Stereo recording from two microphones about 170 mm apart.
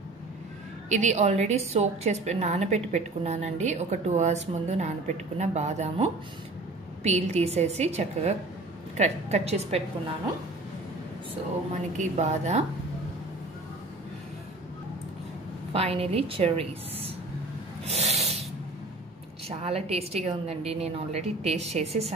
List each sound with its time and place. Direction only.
0.8 s a woman's voice: 45° right (ahead or behind)
11.7 s a woman's voice: 45° right (ahead or behind)
15.7 s a woman's voice: 35° right (ahead or behind)
17.8 s snort: 40° right (ahead or behind)
19.6 s a woman's voice: 35° right (ahead or behind)